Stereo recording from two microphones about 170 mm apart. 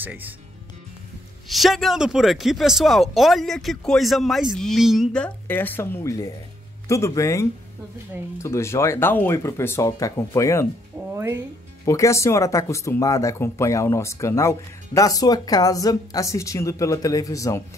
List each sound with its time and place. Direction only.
0.0 s speech: 10° right (ahead or behind)
1.5 s speech: centre (ahead or behind); by 10.7 s 15° left (ahead or behind)
11.1 s speech: 15° right (ahead or behind)
11.8 s speech: 20° left (ahead or behind)